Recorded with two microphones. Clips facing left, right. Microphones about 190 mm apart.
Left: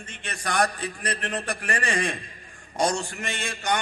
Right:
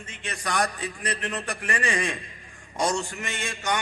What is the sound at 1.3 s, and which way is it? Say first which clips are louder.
A man's voice: left 1 dB; 35° left (ahead or behind).